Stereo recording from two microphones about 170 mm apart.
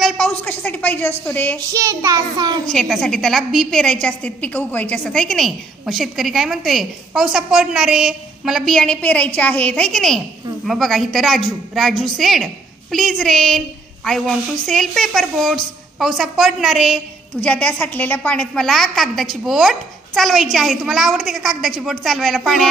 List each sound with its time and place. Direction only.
0.0 s a woman's voice: 10° left (ahead or behind)
1.7 s child singing: 15° right (ahead or behind)
2.6 s a woman's voice: centre (ahead or behind)